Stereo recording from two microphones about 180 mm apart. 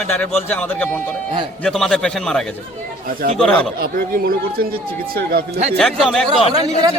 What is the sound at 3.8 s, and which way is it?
Speech, 55° right (ahead or behind).